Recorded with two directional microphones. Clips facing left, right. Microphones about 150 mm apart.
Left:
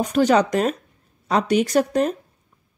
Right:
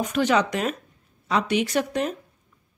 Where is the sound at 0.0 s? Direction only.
35° left (ahead or behind).